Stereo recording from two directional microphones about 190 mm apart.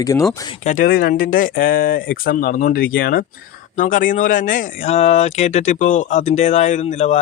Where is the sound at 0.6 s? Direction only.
40° left (ahead or behind).